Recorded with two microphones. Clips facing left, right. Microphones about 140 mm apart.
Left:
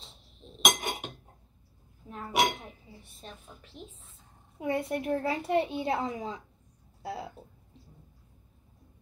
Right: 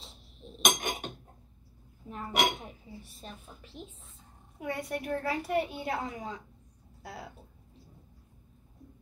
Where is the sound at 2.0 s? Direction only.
Centre (ahead or behind).